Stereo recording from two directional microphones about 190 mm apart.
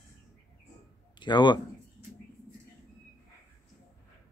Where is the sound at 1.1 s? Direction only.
25° left (ahead or behind).